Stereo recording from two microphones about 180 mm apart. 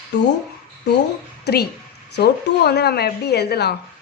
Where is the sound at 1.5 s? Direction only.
65° left (ahead or behind).